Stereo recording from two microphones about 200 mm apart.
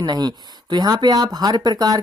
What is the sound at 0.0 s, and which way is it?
Speech, 20° right (ahead or behind).